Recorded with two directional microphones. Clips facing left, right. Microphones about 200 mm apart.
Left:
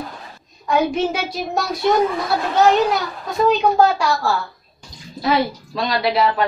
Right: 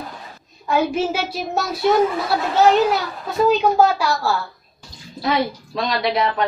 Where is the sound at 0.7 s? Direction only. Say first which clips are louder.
Left 1 dB; centre (ahead or behind).